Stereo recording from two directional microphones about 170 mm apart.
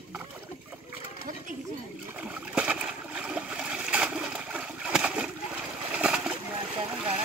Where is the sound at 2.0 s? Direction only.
5° right (ahead or behind).